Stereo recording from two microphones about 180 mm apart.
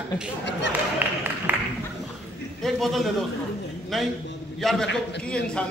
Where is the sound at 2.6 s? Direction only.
Centre (ahead or behind).